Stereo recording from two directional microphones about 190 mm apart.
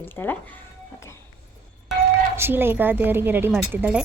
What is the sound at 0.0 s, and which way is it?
Speech, 10° left (ahead or behind).